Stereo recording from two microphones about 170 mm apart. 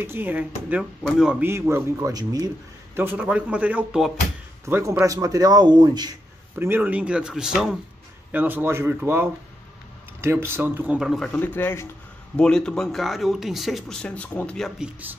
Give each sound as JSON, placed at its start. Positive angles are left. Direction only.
{"t": 0.0, "sound": "speech", "side_deg": -15}
{"t": 1.5, "sound": "speech", "side_deg": -15}
{"t": 3.0, "sound": "speech", "side_deg": -10}
{"t": 6.5, "sound": "speech", "side_deg": -10}
{"t": 11.3, "sound": "speech", "side_deg": 10}